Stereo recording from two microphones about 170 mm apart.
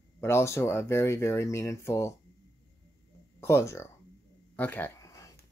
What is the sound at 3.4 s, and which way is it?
Speech, 15° left (ahead or behind).